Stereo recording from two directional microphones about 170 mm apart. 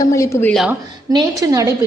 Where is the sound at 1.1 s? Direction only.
20° right (ahead or behind).